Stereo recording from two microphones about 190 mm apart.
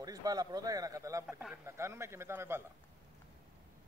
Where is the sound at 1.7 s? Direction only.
15° right (ahead or behind).